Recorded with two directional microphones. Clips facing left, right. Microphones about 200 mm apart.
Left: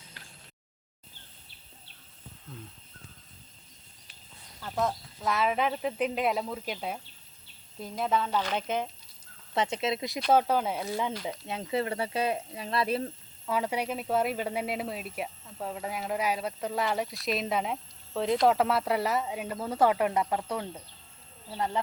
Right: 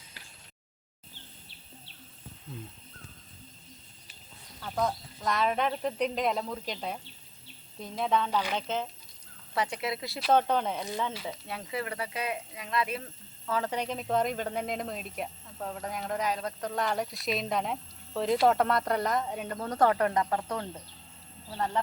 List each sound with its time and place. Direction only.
4.6 s speech: centre (ahead or behind)
8.3 s speech: 10° right (ahead or behind)
8.5 s speech: 10° left (ahead or behind)
9.6 s speech: 20° left (ahead or behind)
10.3 s speech: 5° left (ahead or behind); by 13.1 s 35° left (ahead or behind)
13.5 s speech: 10° left (ahead or behind)